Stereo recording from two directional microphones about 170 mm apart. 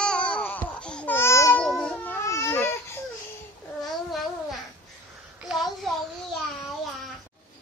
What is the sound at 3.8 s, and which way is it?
Babbling, centre (ahead or behind).